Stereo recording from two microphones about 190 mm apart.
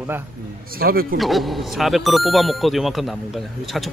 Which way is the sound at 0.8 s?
50° right (ahead or behind).